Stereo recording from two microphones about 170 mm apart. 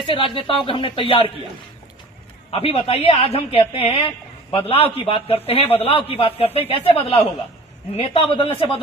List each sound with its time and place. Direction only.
0.0 s a man's voice: 30° left (ahead or behind)
2.5 s a man's voice: 35° left (ahead or behind)